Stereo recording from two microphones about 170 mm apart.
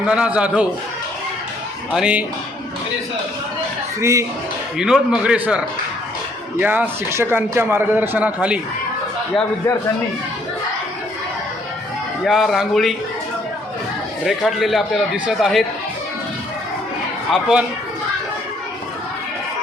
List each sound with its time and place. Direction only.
0.0 s a man's voice: 5° right (ahead or behind)
1.9 s speech: 5° right (ahead or behind)
4.0 s a man's voice: 15° right (ahead or behind)
4.8 s a man's voice: 5° right (ahead or behind)
12.2 s speech: centre (ahead or behind)
14.3 s speech: centre (ahead or behind)
17.3 s speech: 5° right (ahead or behind)